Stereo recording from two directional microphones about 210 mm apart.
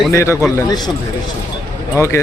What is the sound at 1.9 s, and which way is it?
Speech, 15° left (ahead or behind).